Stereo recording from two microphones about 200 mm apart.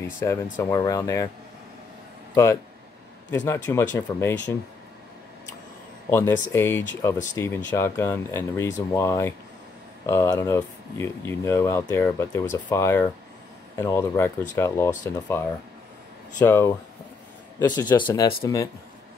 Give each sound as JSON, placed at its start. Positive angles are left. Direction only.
{"t": 0.2, "sound": "speech", "side_deg": 15}
{"t": 2.3, "sound": "speech", "side_deg": 15}
{"t": 6.0, "sound": "speech", "side_deg": 10}